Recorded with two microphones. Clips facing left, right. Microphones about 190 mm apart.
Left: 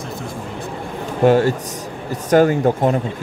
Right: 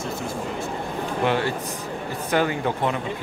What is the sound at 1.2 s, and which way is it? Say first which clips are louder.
Speech: left 10 dB; 40° left (ahead or behind).